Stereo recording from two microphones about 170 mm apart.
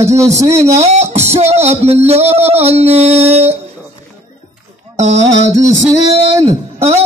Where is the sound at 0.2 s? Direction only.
15° right (ahead or behind).